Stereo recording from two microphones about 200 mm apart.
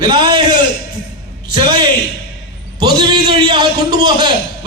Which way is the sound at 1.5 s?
20° right (ahead or behind).